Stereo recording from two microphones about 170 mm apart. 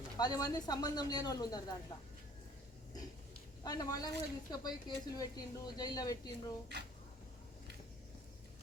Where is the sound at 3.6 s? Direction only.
20° left (ahead or behind).